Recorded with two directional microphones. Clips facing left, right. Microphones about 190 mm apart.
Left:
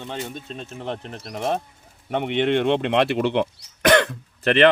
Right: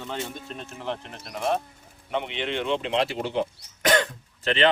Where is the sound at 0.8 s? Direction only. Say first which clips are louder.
Left 2 dB; 35° left (ahead or behind).